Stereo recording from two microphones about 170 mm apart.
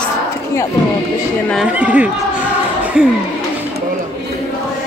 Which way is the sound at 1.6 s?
10° right (ahead or behind).